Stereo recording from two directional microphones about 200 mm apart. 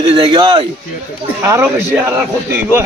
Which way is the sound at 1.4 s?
10° right (ahead or behind).